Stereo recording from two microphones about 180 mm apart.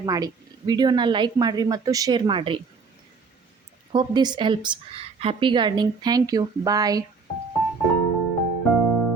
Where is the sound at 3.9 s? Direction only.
25° right (ahead or behind).